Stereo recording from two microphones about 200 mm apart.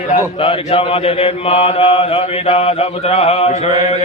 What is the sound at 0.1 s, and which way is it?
Mantra, 30° left (ahead or behind).